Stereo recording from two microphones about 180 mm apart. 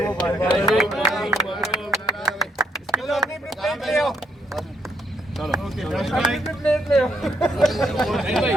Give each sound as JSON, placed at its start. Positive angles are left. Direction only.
{"t": 0.0, "sound": "speech", "side_deg": 10}
{"t": 0.7, "sound": "music", "side_deg": 0}
{"t": 1.5, "sound": "a sound", "side_deg": 0}
{"t": 5.6, "sound": "bird", "side_deg": 0}
{"t": 6.3, "sound": "a sound", "side_deg": 0}
{"t": 8.0, "sound": "speech", "side_deg": 0}